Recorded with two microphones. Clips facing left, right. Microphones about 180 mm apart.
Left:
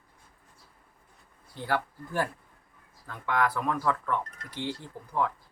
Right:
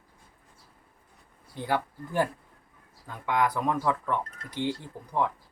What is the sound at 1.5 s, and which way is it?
Speech, 15° right (ahead or behind).